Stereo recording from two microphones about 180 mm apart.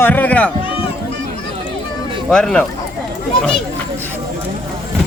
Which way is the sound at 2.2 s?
5° left (ahead or behind).